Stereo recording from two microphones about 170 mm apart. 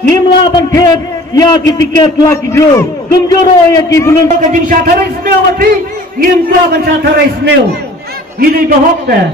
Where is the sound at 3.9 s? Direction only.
20° left (ahead or behind).